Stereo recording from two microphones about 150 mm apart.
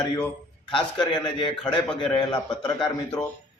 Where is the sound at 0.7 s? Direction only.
35° left (ahead or behind).